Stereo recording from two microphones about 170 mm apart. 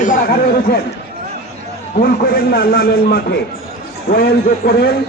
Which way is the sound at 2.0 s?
65° left (ahead or behind).